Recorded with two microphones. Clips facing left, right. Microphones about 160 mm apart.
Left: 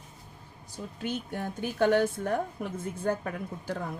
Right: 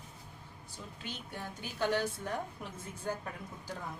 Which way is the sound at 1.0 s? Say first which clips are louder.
Left 10 dB; 50° left (ahead or behind).